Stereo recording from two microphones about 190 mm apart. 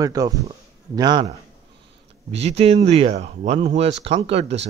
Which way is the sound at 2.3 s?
35° right (ahead or behind).